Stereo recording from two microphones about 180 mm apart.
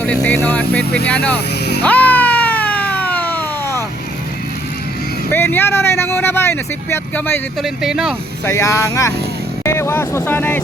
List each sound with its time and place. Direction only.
0.0 s speech: 10° left (ahead or behind)
1.8 s a sound: 10° left (ahead or behind)
5.3 s speech: 10° left (ahead or behind)
7.6 s speech: centre (ahead or behind)
8.4 s speech: 15° left (ahead or behind)